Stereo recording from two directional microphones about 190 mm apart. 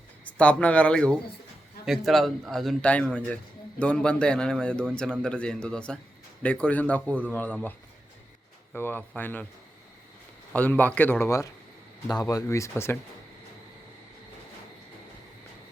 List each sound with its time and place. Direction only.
0.3 s a man's voice: 5° left (ahead or behind)
8.7 s a man's voice: 10° left (ahead or behind)
10.5 s a man's voice: 10° left (ahead or behind)